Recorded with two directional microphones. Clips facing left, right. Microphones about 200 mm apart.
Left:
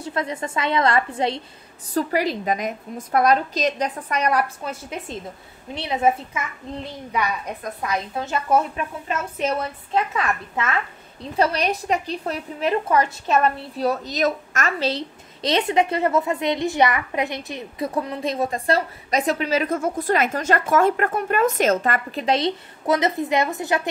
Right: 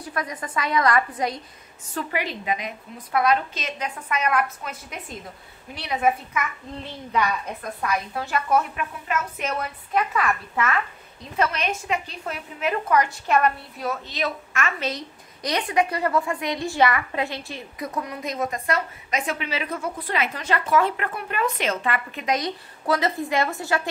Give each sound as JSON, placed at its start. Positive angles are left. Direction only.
{"t": 0.0, "sound": "a woman's voice", "side_deg": 25}
{"t": 6.8, "sound": "a child's voice", "side_deg": 10}
{"t": 11.3, "sound": "a woman's voice", "side_deg": 35}